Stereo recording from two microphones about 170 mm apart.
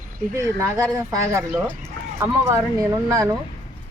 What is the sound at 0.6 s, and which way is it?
Speech, 15° right (ahead or behind).